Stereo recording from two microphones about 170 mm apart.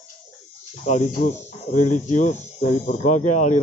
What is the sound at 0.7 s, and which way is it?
Speech, 45° left (ahead or behind).